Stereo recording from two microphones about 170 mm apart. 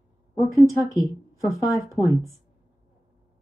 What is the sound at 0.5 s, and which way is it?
Speech, 20° right (ahead or behind).